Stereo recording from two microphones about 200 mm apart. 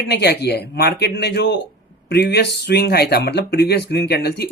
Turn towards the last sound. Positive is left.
turn(degrees=55)  # may be behind; listen again after turning